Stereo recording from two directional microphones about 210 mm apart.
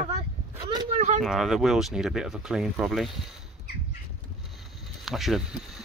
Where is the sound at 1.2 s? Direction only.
Centre (ahead or behind).